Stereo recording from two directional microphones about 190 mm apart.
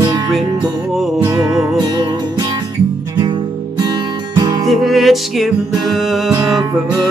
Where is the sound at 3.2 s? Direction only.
25° right (ahead or behind).